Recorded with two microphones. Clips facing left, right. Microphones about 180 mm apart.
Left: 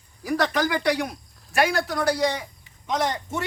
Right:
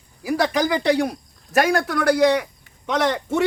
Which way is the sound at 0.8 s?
30° right (ahead or behind).